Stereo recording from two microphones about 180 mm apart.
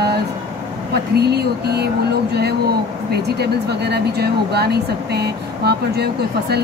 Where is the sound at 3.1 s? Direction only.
65° right (ahead or behind).